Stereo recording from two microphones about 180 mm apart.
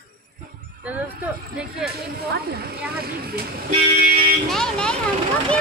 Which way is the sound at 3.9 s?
55° right (ahead or behind).